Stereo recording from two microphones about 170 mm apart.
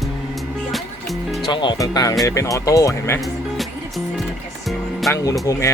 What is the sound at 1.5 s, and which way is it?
Speech, 25° left (ahead or behind).